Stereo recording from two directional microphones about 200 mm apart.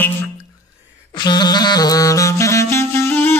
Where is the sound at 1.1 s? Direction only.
20° left (ahead or behind).